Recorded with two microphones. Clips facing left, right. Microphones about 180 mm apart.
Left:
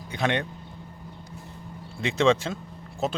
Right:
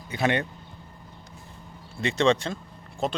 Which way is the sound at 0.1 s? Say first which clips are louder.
Right 1 dB; 5° right (ahead or behind).